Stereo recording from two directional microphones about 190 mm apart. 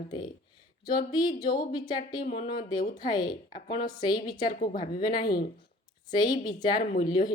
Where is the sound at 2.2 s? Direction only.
50° left (ahead or behind).